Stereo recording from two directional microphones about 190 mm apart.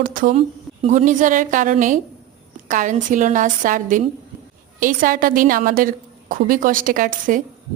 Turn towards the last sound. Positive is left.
turn(degrees=-45)  # may be behind; listen again after turning